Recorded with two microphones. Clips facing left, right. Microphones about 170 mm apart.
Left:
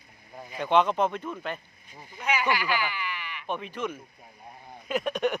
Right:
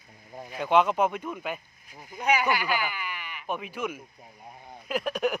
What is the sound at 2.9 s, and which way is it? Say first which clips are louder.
Bleat: left 2 dB; 45° right (ahead or behind).